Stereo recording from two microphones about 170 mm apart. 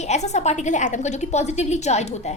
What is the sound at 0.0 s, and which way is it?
A woman's voice, 40° left (ahead or behind).